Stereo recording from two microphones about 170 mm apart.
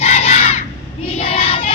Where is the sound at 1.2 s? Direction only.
35° left (ahead or behind).